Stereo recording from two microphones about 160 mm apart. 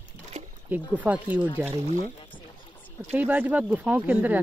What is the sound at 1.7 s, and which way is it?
Speech, 45° right (ahead or behind).